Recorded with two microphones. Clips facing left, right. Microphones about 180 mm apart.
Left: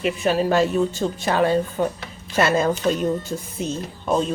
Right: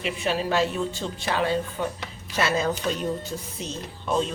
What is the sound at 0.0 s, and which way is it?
A woman's voice, 45° left (ahead or behind).